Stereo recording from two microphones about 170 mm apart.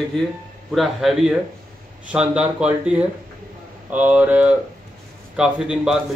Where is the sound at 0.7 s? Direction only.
Centre (ahead or behind).